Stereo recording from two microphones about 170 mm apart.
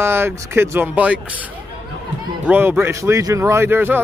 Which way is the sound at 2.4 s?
10° right (ahead or behind).